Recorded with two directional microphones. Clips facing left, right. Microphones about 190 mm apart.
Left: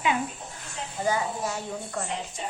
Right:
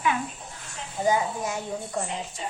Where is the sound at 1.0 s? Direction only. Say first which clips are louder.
Right 3 dB; 15° right (ahead or behind).